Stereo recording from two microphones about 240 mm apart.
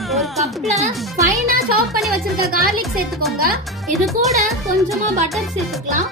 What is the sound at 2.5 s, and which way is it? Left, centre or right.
Speech, right.